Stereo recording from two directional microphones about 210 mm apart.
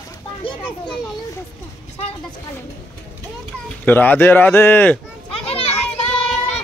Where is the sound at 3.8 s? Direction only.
10° left (ahead or behind).